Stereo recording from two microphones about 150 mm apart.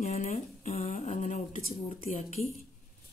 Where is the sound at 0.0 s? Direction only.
50° left (ahead or behind).